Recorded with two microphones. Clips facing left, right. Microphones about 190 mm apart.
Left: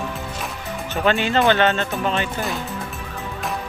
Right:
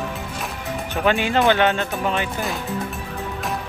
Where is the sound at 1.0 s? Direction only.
10° right (ahead or behind).